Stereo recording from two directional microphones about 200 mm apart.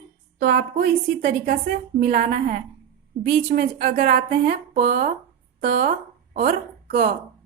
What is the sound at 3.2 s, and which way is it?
Speech, 30° right (ahead or behind).